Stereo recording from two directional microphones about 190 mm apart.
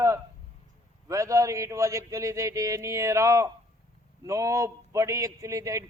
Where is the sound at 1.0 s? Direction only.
15° right (ahead or behind).